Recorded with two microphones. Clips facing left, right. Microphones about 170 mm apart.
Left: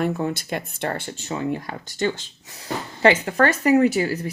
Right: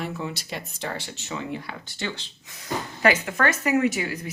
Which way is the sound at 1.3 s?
40° left (ahead or behind).